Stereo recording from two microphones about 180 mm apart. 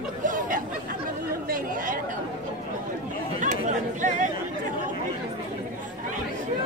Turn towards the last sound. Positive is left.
turn(degrees=-45)  # may be behind; listen again after turning